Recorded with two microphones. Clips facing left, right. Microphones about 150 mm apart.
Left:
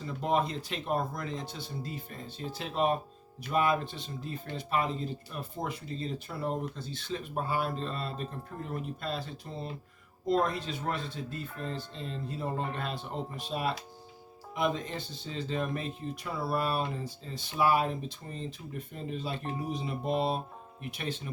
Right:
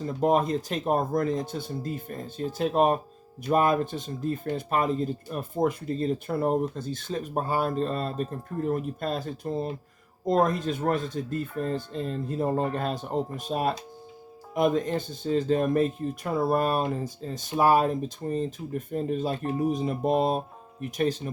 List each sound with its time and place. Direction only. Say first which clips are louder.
0.0 s speech: right 6 dB; 45° right (ahead or behind)